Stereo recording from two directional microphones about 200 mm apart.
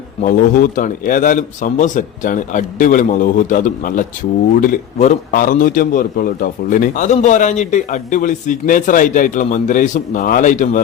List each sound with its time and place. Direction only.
0.2 s a man's voice: 40° left (ahead or behind)